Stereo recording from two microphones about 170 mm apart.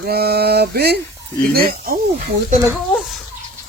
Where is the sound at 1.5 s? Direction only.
60° right (ahead or behind).